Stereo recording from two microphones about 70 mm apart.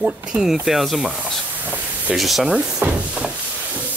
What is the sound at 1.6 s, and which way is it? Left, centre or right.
Spray, right.